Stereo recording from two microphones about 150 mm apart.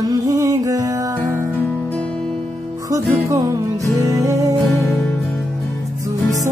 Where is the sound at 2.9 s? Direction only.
20° right (ahead or behind).